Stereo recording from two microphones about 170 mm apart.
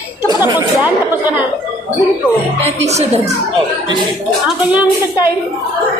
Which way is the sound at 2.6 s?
40° right (ahead or behind).